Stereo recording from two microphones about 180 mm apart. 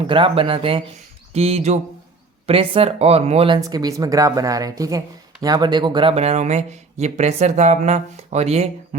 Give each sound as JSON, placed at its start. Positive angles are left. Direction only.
{"t": 0.1, "sound": "speech", "side_deg": -30}
{"t": 3.6, "sound": "speech", "side_deg": -20}